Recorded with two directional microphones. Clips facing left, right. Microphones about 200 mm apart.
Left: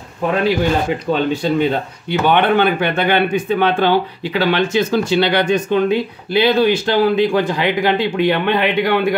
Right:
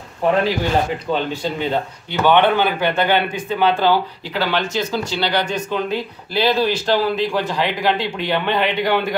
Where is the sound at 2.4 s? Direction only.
60° left (ahead or behind).